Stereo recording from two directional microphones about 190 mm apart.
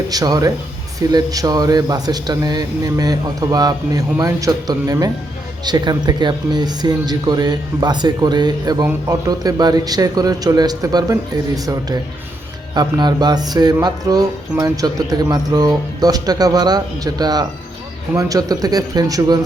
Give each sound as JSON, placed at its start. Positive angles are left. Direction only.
{"t": 0.1, "sound": "speech", "side_deg": -20}